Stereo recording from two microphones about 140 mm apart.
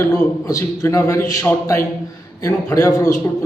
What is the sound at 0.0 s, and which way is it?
A man's voice, 20° left (ahead or behind).